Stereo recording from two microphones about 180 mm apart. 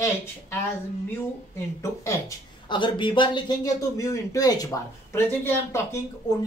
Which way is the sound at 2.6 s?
25° left (ahead or behind).